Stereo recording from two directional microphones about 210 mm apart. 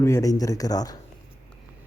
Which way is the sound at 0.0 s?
15° left (ahead or behind).